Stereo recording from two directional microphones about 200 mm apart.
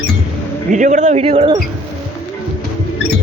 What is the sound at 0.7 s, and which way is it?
Speech, 40° right (ahead or behind).